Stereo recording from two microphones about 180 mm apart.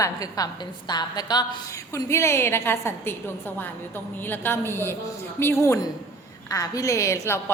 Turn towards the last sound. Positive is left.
turn(degrees=15)  # may be behind; listen again after turning